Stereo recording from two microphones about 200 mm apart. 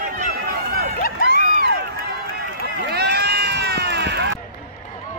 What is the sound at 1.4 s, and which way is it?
Crowd, 40° right (ahead or behind).